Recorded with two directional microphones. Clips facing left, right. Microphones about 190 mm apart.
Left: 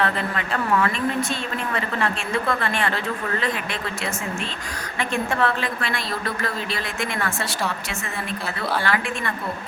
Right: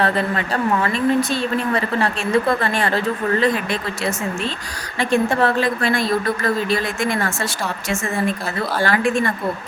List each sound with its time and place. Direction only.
0.0 s a woman's voice: 35° right (ahead or behind)
8.8 s a woman's voice: 45° right (ahead or behind)